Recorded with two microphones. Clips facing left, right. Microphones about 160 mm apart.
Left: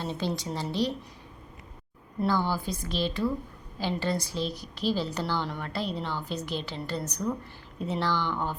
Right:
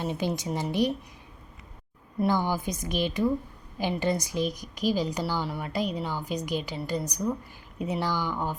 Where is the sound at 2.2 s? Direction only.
15° right (ahead or behind).